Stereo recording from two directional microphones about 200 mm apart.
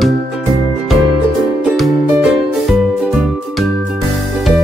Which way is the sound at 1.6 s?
5° right (ahead or behind).